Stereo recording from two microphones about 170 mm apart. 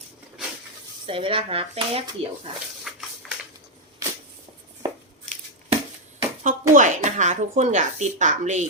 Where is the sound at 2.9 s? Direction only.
Centre (ahead or behind).